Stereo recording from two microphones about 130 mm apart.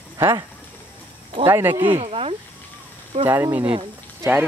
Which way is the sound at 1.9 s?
45° right (ahead or behind).